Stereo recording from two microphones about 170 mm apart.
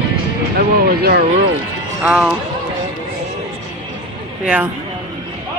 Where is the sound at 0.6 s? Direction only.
65° right (ahead or behind).